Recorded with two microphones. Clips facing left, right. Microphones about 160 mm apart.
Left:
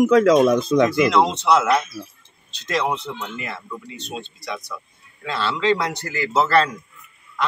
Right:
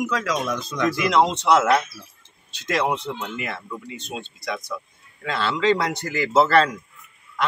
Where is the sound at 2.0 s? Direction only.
25° left (ahead or behind).